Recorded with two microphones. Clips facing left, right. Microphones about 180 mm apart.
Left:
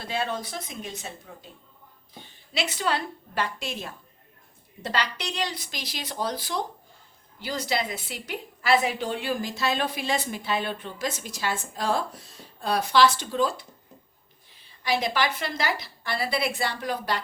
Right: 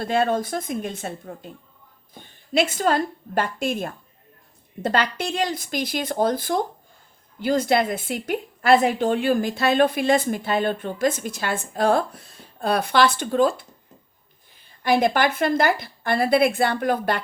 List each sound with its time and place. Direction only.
0.0 s a woman's voice: 50° right (ahead or behind)
14.8 s a woman's voice: 55° right (ahead or behind)